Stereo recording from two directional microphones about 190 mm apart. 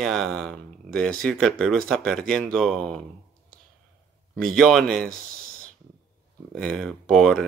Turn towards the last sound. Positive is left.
turn(degrees=0)  # may be behind; listen again after turning